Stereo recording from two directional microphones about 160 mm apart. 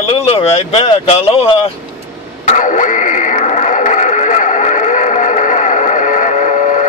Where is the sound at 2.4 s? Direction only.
50° left (ahead or behind).